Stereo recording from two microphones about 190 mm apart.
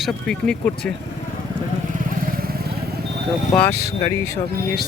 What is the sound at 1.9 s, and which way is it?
Vehicle, 50° right (ahead or behind).